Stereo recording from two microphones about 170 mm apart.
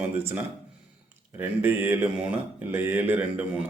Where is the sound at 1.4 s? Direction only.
10° right (ahead or behind).